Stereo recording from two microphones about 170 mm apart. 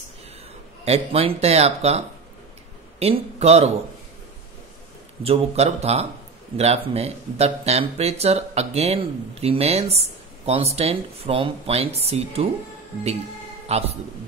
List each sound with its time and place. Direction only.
0.8 s speech: 35° right (ahead or behind)
5.2 s speech: 35° right (ahead or behind)
13.7 s a man's voice: 35° right (ahead or behind)